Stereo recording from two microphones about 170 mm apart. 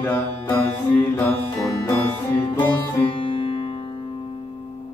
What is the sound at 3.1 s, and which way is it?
Music, 30° left (ahead or behind).